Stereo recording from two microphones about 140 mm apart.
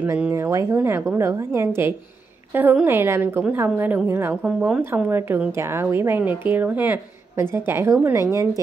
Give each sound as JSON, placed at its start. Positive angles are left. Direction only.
{"t": 0.0, "sound": "a woman's voice", "side_deg": -15}
{"t": 4.5, "sound": "a woman's voice", "side_deg": -5}